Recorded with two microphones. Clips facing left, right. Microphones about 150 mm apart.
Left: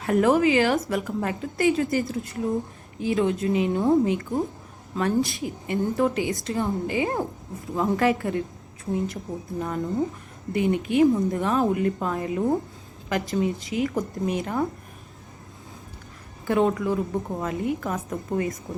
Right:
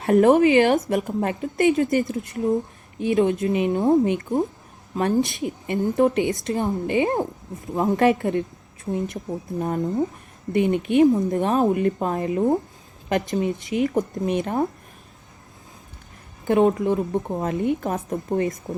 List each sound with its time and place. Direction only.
0.0 s a woman's voice: 25° right (ahead or behind)
9.6 s speech: 40° right (ahead or behind)
10.5 s a woman's voice: 20° right (ahead or behind)
16.5 s a woman's voice: 25° right (ahead or behind)